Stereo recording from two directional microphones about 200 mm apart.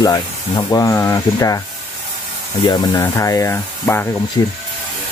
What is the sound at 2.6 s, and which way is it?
Speech, 20° left (ahead or behind).